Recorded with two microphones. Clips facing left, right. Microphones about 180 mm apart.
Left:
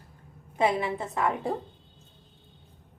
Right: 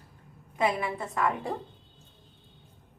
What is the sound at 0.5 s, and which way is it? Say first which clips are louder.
Speech: left 2 dB; 25° left (ahead or behind).